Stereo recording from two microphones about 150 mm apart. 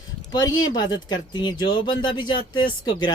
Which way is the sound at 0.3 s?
30° left (ahead or behind).